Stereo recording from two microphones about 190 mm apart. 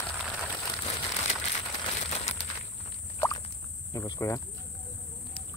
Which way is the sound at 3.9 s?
20° left (ahead or behind).